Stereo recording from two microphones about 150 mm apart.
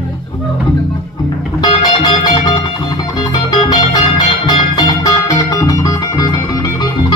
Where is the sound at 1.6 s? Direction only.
30° left (ahead or behind).